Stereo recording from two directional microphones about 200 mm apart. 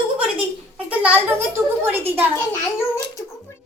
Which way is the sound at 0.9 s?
5° right (ahead or behind).